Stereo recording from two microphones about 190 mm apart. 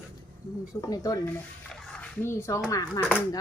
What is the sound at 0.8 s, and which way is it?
Speech, 20° left (ahead or behind).